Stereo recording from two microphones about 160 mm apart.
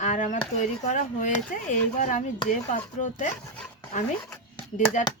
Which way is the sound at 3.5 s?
10° left (ahead or behind).